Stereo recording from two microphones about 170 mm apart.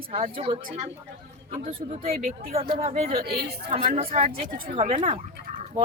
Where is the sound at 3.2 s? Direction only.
65° right (ahead or behind).